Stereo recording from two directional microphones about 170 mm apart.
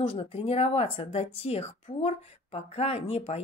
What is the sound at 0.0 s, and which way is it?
Speech, 35° left (ahead or behind).